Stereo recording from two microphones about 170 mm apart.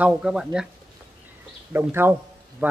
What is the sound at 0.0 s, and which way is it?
Speech, 5° right (ahead or behind).